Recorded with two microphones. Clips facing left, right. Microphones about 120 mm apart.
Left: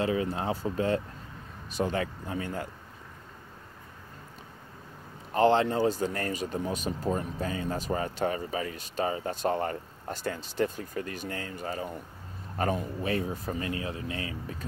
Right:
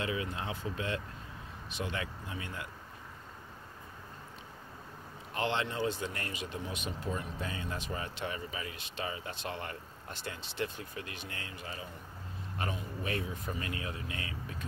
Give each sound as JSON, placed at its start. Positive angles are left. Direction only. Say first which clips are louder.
{"t": 0.0, "sound": "speech", "louder": "left 8 dB", "side_deg": 35}
{"t": 5.3, "sound": "speech", "louder": "left 11 dB", "side_deg": 40}